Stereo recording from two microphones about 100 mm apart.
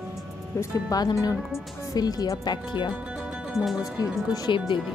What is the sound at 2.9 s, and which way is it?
Speech, 5° right (ahead or behind).